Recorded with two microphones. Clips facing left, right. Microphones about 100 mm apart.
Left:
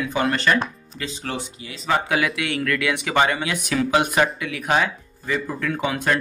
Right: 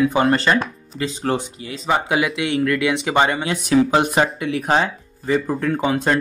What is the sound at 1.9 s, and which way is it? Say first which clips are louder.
Speech: right 2 dB; 20° right (ahead or behind).